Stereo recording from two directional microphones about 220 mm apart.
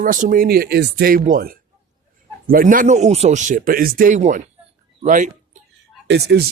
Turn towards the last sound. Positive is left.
turn(degrees=-50)  # may be behind; listen again after turning